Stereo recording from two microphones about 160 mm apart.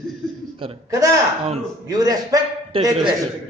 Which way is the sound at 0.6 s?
35° right (ahead or behind).